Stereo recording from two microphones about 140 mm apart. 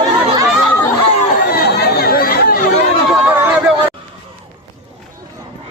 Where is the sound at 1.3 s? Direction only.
85° left.